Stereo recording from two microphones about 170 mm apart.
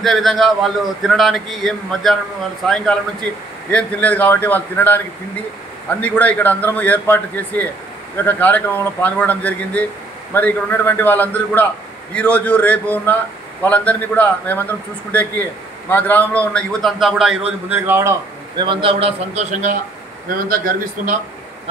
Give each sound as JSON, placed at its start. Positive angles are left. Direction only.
{"t": 0.0, "sound": "a man's voice", "side_deg": 0}
{"t": 17.6, "sound": "a man's voice", "side_deg": -10}
{"t": 18.6, "sound": "a man's voice", "side_deg": -30}
{"t": 20.4, "sound": "speech", "side_deg": -55}